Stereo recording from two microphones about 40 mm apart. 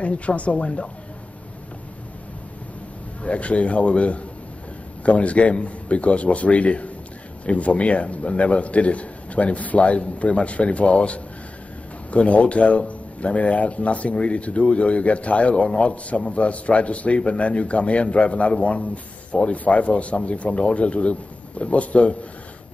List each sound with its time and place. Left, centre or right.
0.0 s speech: left
3.2 s speech: left